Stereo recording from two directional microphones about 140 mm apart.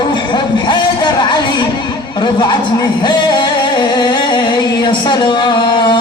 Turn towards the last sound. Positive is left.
turn(degrees=35)  # may be behind; listen again after turning